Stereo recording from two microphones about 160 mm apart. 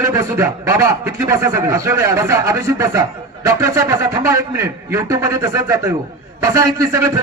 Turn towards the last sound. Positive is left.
turn(degrees=-20)  # may be behind; listen again after turning